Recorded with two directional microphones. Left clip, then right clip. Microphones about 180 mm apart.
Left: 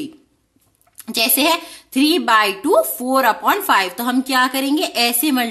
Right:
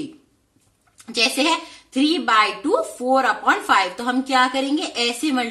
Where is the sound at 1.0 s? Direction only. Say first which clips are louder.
Left 2 dB; 45° left (ahead or behind).